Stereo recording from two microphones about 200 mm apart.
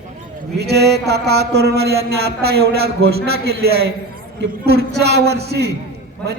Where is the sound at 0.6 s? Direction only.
55° right (ahead or behind).